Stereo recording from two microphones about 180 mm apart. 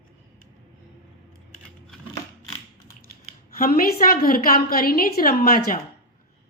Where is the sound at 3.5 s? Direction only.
50° left (ahead or behind).